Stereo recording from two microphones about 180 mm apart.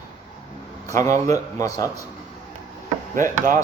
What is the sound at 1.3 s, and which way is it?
Speech, 20° left (ahead or behind).